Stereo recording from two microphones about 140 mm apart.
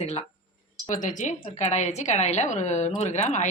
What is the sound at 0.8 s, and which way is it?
A woman's voice, 65° left (ahead or behind).